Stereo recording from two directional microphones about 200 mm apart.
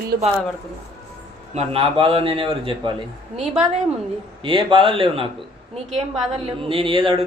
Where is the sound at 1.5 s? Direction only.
30° right (ahead or behind).